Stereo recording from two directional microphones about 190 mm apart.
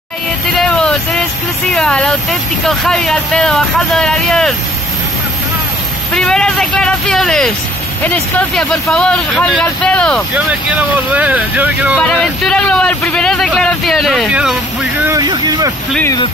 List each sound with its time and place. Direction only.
0.6 s a sound: 5° left (ahead or behind)
1.7 s a man's voice: 5° left (ahead or behind)
6.1 s a man's voice: 5° left (ahead or behind)
11.1 s speech: 10° right (ahead or behind)
12.0 s a man's voice: 5° left (ahead or behind)
15.0 s speech: 20° right (ahead or behind)